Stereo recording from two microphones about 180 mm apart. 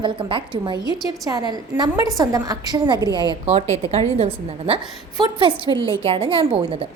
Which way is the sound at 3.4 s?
35° right (ahead or behind).